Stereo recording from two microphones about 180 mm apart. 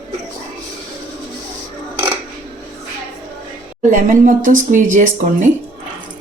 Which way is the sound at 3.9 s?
45° right (ahead or behind).